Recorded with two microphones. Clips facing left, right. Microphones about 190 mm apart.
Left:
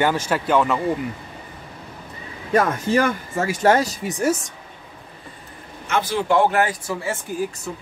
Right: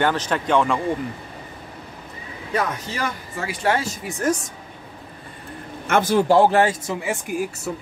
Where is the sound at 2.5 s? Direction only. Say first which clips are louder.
Left 7 dB; 50° left (ahead or behind).